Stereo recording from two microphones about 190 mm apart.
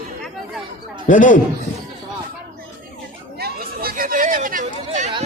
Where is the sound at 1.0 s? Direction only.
45° left (ahead or behind).